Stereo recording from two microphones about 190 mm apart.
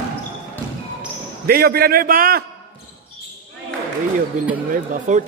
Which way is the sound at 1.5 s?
55° right (ahead or behind).